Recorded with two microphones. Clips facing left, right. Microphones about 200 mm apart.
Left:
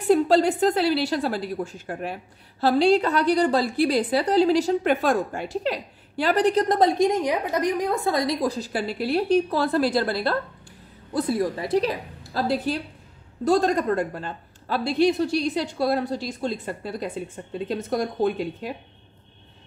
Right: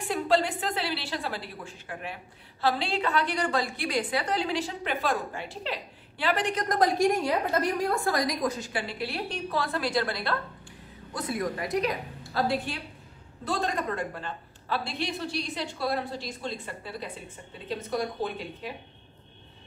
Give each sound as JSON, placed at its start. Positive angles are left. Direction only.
{"t": 0.1, "sound": "a woman's voice", "side_deg": 40}